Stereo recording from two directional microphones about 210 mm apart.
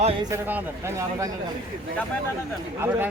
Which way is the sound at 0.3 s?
10° right (ahead or behind).